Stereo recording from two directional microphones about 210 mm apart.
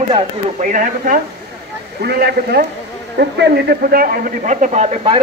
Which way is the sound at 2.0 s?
50° right (ahead or behind).